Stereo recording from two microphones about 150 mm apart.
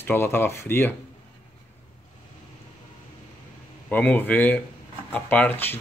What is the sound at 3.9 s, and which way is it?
Speech, 10° left (ahead or behind).